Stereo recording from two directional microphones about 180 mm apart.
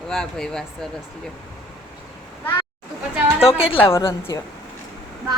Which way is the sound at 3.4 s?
30° left (ahead or behind).